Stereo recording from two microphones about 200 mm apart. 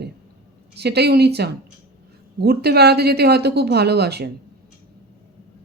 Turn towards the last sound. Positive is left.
turn(degrees=-55)  # may be behind; listen again after turning